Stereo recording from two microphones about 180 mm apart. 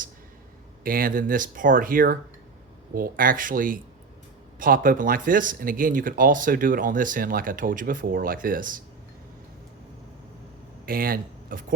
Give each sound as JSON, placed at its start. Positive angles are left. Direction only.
{"t": 0.9, "sound": "speech", "side_deg": -50}
{"t": 10.8, "sound": "speech", "side_deg": -55}